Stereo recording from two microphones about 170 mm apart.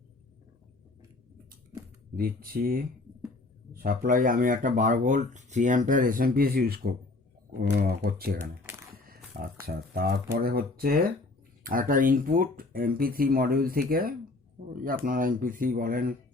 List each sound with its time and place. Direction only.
2.1 s speech: 60° right (ahead or behind)